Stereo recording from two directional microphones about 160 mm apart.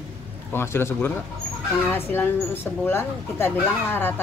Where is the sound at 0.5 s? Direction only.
15° left (ahead or behind).